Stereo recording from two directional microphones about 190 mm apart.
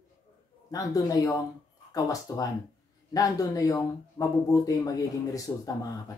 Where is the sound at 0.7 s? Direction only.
20° left (ahead or behind).